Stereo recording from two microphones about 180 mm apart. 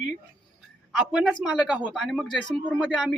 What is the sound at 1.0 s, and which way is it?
Speech, centre (ahead or behind).